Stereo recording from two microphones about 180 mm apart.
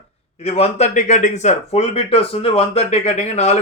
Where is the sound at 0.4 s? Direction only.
35° left (ahead or behind).